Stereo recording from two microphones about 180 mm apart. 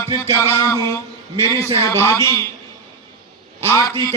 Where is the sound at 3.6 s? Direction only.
15° left (ahead or behind).